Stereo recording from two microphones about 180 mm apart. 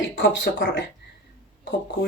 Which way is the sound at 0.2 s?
85° left.